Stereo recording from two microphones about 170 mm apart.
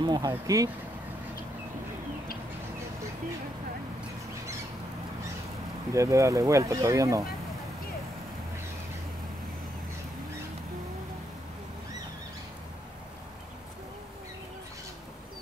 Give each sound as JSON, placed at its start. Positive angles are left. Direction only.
{"t": 0.0, "sound": "speech", "side_deg": -25}
{"t": 5.9, "sound": "speech", "side_deg": -20}